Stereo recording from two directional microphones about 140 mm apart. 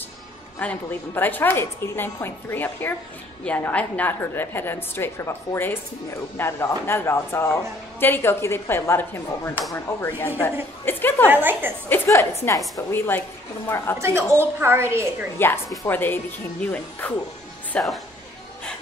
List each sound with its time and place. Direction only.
0.6 s a woman's voice: 10° left (ahead or behind)
11.2 s a woman's voice: 15° right (ahead or behind)
11.9 s a woman's voice: 20° left (ahead or behind)
13.9 s a woman's voice: 20° right (ahead or behind)
15.3 s a woman's voice: 15° left (ahead or behind); by 18.0 s centre (ahead or behind)